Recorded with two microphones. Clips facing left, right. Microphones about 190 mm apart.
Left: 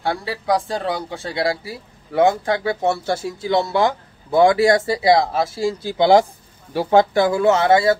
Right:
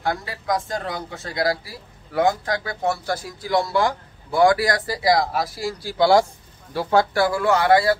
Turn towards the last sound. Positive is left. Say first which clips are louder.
# left 2 dB
turn(degrees=25)  # may be behind; listen again after turning